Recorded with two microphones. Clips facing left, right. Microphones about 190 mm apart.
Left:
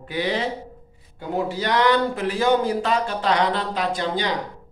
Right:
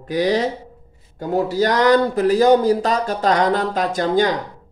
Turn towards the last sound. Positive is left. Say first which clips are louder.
# right 6 dB
turn(degrees=-45)  # may be behind; listen again after turning